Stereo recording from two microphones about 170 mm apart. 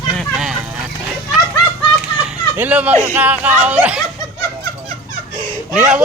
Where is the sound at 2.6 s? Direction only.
10° right (ahead or behind).